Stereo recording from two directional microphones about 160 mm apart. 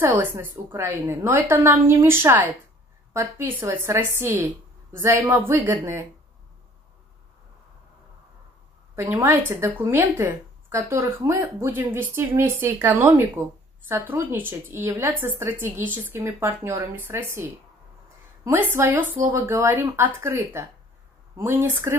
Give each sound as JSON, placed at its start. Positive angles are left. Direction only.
{"t": 0.0, "sound": "speech", "side_deg": -15}
{"t": 8.9, "sound": "speech", "side_deg": -15}